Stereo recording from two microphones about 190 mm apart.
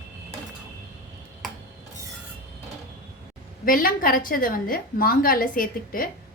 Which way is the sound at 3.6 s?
45° left (ahead or behind).